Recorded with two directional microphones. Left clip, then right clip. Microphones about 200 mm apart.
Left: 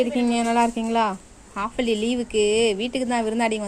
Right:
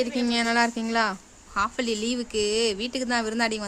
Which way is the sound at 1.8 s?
45° right (ahead or behind).